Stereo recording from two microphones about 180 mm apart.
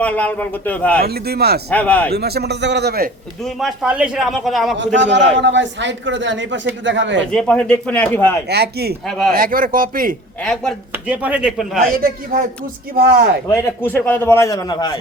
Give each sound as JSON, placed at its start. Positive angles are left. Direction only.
{"t": 0.0, "sound": "a man's voice", "side_deg": 10}
{"t": 1.0, "sound": "a man's voice", "side_deg": -60}
{"t": 1.7, "sound": "a man's voice", "side_deg": 10}
{"t": 2.1, "sound": "a man's voice", "side_deg": -65}
{"t": 3.4, "sound": "a man's voice", "side_deg": 0}
{"t": 4.8, "sound": "a man's voice", "side_deg": -80}
{"t": 7.3, "sound": "a man's voice", "side_deg": 5}
{"t": 8.4, "sound": "a man's voice", "side_deg": -65}
{"t": 9.0, "sound": "a man's voice", "side_deg": 0}
{"t": 9.3, "sound": "speech", "side_deg": -50}
{"t": 10.4, "sound": "a man's voice", "side_deg": 5}
{"t": 11.1, "sound": "speech", "side_deg": -5}
{"t": 11.9, "sound": "speech", "side_deg": -50}
{"t": 13.5, "sound": "a man's voice", "side_deg": 10}